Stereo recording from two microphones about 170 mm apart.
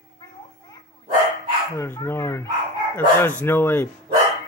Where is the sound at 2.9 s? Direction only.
10° left (ahead or behind).